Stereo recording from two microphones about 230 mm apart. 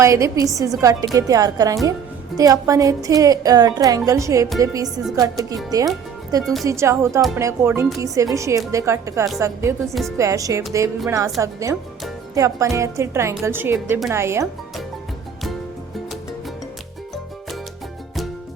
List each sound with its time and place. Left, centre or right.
0.0 s a woman's voice: centre
6.4 s speech: centre
6.7 s a woman's voice: centre
9.8 s speech: centre
10.2 s a woman's voice: centre